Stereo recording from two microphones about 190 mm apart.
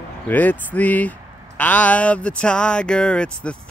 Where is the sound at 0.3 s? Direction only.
10° left (ahead or behind).